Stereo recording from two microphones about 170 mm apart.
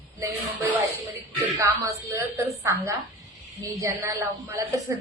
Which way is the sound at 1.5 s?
15° right (ahead or behind).